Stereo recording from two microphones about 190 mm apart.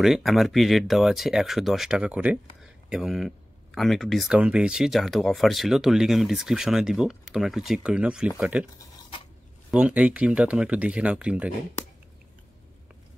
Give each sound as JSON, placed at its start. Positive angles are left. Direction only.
{"t": 0.0, "sound": "speech", "side_deg": 0}
{"t": 9.7, "sound": "speech", "side_deg": -5}